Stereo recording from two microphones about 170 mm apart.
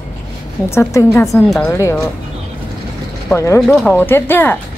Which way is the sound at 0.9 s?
20° left (ahead or behind).